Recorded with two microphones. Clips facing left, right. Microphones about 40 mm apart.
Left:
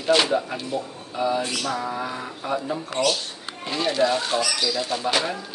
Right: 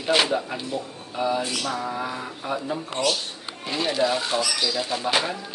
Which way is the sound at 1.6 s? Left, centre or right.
Centre.